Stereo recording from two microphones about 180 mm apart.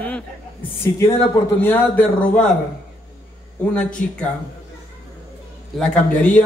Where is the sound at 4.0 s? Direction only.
10° left (ahead or behind).